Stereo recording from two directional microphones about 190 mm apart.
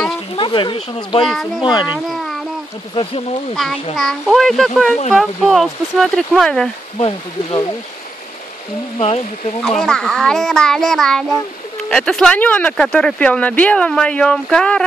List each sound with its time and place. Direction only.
0.4 s speech: 25° left (ahead or behind)
1.2 s speech: centre (ahead or behind)
1.6 s speech: 25° left (ahead or behind)
1.9 s a child's voice: centre (ahead or behind)
3.9 s speech: centre (ahead or behind)
7.0 s speech: 30° left (ahead or behind)
8.9 s speech: 30° left (ahead or behind)
9.8 s speech: 5° left (ahead or behind)